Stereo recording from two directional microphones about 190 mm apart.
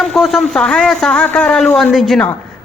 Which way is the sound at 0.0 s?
Centre (ahead or behind).